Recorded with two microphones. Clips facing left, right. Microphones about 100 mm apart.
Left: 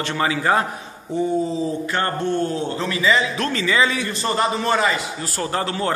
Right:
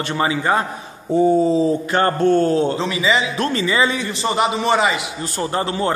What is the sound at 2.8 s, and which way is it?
A man's voice, 15° right (ahead or behind).